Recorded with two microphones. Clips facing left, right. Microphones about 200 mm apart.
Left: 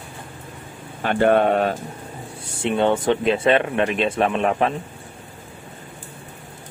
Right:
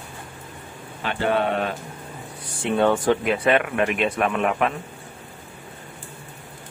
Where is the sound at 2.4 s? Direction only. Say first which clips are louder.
Even; 25° left (ahead or behind).